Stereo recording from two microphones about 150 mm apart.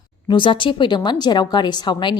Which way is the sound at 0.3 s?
35° left (ahead or behind).